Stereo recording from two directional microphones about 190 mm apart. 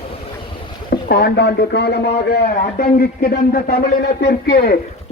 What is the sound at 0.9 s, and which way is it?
A man's voice, 55° left (ahead or behind).